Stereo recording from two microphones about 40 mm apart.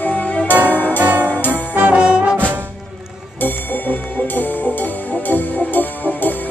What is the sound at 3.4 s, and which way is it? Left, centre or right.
Music, left.